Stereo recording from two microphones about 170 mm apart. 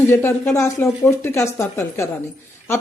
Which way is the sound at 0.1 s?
15° left (ahead or behind).